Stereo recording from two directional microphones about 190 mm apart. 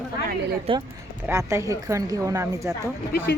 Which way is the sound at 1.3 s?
15° right (ahead or behind).